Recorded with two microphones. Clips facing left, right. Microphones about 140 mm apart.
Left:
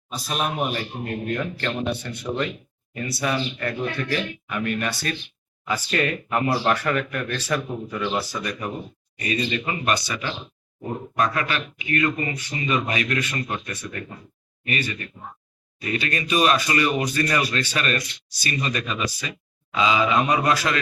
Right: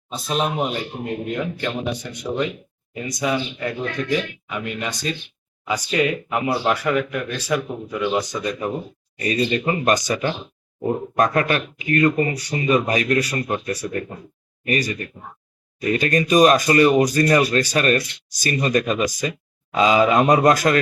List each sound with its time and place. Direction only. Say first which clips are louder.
0.1 s a man's voice: right 4 dB; 25° right (ahead or behind); by 20.7 s 45° right (ahead or behind)